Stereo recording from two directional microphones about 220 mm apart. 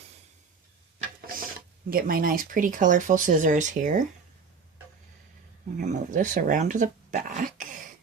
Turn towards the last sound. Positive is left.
turn(degrees=-35)  # may be behind; listen again after turning